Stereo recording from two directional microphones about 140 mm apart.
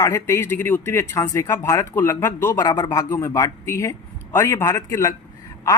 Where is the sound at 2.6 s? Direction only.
30° left (ahead or behind).